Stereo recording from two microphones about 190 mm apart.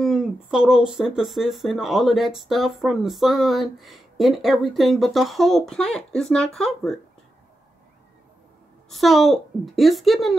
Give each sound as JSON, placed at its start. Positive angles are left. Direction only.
{"t": 0.0, "sound": "speech", "side_deg": -5}
{"t": 8.9, "sound": "speech", "side_deg": 0}